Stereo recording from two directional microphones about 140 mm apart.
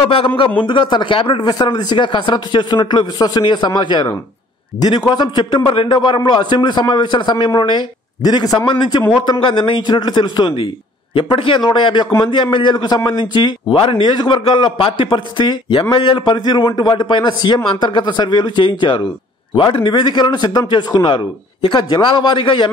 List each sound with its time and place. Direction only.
0.0 s a man's voice: 40° left (ahead or behind)